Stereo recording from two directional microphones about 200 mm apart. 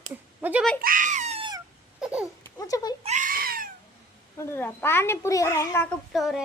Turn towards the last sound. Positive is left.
turn(degrees=0)  # may be behind; listen again after turning